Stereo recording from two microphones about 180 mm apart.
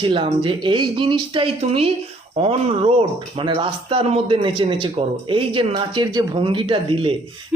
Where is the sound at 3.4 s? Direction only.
30° right (ahead or behind).